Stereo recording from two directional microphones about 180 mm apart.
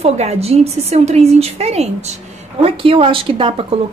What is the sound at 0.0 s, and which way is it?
Speech, 35° right (ahead or behind).